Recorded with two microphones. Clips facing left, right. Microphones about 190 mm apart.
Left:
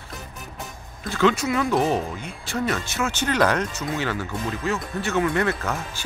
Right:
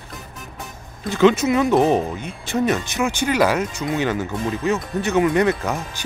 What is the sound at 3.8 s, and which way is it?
Speech, 20° right (ahead or behind).